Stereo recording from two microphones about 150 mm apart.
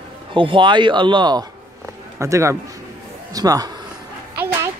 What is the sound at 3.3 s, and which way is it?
Speech, 25° right (ahead or behind).